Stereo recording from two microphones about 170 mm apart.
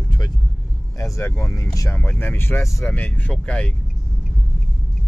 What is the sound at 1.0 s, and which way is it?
Speech, 20° left (ahead or behind).